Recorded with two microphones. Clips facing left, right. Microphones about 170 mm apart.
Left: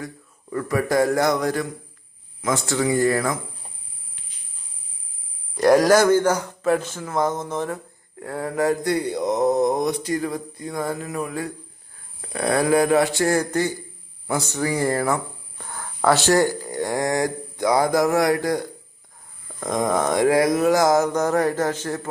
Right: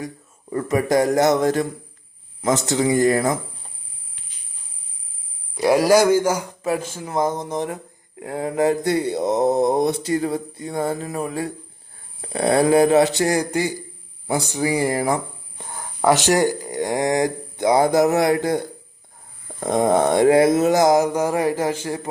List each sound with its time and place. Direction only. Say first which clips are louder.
0.5 s mantra: right 2 dB; 20° right (ahead or behind)
5.5 s speech: even; 5° right (ahead or behind)
8.2 s mantra: right 3 dB; 20° right (ahead or behind)
14.3 s speech: right 2 dB; 15° right (ahead or behind)
19.5 s mantra: right 4 dB; 30° right (ahead or behind); by 22.1 s 10° right (ahead or behind)